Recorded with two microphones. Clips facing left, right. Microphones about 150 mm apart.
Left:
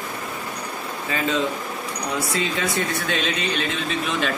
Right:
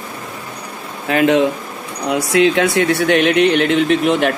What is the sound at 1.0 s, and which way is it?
Speech, 70° right (ahead or behind).